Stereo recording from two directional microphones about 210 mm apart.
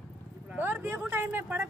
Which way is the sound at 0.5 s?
10° right (ahead or behind).